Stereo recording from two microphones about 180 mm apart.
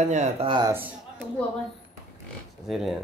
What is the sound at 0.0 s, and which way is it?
Speech, 40° right (ahead or behind).